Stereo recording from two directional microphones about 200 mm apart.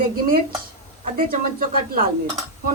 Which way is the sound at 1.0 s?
45° right (ahead or behind).